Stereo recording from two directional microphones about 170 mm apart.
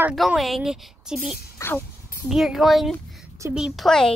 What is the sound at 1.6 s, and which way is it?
Speech, 15° left (ahead or behind).